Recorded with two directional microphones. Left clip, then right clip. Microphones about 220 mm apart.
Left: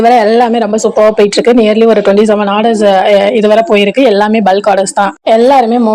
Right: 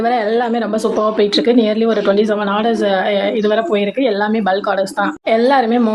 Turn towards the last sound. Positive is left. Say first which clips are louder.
# left 6 dB
turn(degrees=20)  # may be behind; listen again after turning